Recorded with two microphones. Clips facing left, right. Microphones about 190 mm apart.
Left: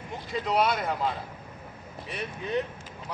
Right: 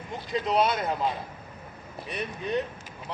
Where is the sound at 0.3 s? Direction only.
20° right (ahead or behind).